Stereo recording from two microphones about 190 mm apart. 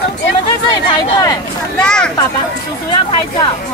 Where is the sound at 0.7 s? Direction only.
20° left (ahead or behind).